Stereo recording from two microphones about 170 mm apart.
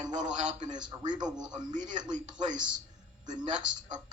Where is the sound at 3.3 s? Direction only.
25° right (ahead or behind).